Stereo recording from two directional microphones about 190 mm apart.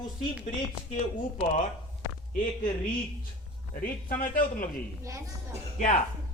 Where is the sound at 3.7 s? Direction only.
45° left (ahead or behind).